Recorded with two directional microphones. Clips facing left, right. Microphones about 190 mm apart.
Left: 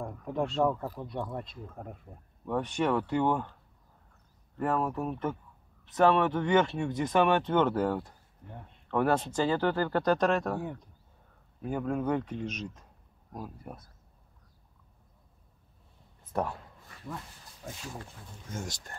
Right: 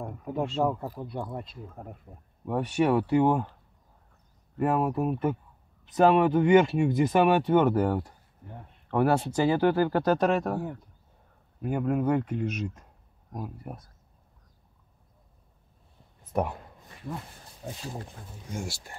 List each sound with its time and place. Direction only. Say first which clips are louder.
0.0 s speech: right 1 dB; 5° right (ahead or behind)
4.6 s speech: right 4 dB; 10° right (ahead or behind)
16.3 s a sound: right 3 dB; 15° right (ahead or behind)
17.6 s speech: right 4 dB; 30° right (ahead or behind)
18.3 s speech: right 3 dB; 10° right (ahead or behind)